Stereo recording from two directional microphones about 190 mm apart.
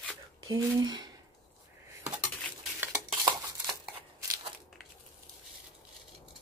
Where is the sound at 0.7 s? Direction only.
20° right (ahead or behind).